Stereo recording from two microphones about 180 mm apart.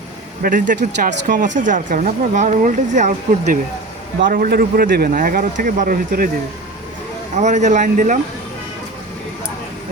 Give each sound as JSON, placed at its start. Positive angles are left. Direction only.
{"t": 0.4, "sound": "speech", "side_deg": -50}
{"t": 4.3, "sound": "speech", "side_deg": -55}
{"t": 7.3, "sound": "speech", "side_deg": -40}